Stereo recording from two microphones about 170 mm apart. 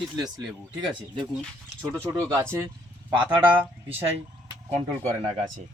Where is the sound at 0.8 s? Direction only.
25° right (ahead or behind).